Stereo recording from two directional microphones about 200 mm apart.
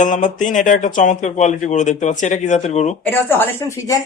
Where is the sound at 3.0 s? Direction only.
10° left (ahead or behind).